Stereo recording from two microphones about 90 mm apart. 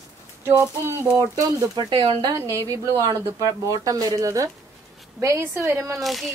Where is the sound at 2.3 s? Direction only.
35° right (ahead or behind).